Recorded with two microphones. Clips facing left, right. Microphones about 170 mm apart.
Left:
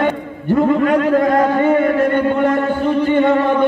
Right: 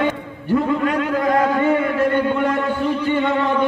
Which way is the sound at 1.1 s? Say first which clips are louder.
Left 4 dB; 45° left (ahead or behind).